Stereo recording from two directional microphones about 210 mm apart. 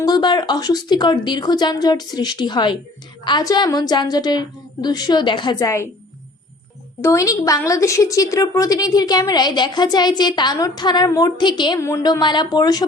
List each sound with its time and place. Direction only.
0.0 s a woman's voice: 20° left (ahead or behind)
7.0 s a woman's voice: 15° left (ahead or behind)